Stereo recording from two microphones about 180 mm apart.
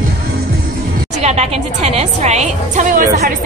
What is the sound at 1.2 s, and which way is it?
A woman's voice, 35° right (ahead or behind).